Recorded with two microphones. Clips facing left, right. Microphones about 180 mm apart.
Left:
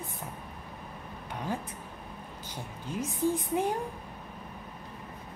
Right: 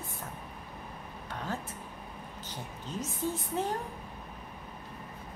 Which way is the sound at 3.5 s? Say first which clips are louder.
Left 3 dB; 10° left (ahead or behind).